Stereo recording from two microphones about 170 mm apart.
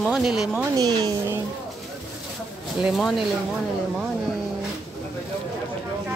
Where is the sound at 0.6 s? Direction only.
20° right (ahead or behind).